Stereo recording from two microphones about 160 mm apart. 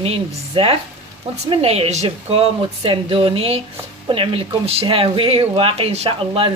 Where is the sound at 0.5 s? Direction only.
30° right (ahead or behind).